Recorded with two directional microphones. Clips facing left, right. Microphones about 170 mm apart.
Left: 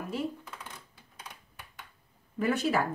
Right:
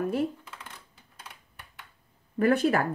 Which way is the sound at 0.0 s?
55° right (ahead or behind).